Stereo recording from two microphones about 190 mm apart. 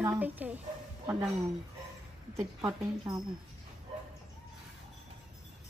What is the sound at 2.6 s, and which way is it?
Speech, 20° right (ahead or behind).